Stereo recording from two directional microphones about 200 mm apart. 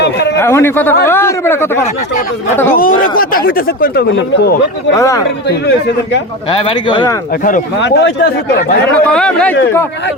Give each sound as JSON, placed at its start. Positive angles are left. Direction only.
{"t": 0.0, "sound": "a sound", "side_deg": 60}
{"t": 0.3, "sound": "speech", "side_deg": 10}
{"t": 2.7, "sound": "speech", "side_deg": 45}
{"t": 4.9, "sound": "speech", "side_deg": 15}
{"t": 6.5, "sound": "speech", "side_deg": 25}
{"t": 7.8, "sound": "a man's voice", "side_deg": 60}
{"t": 9.0, "sound": "speech", "side_deg": 5}